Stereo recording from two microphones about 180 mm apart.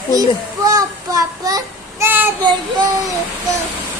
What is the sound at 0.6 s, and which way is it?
Child singing, 20° right (ahead or behind).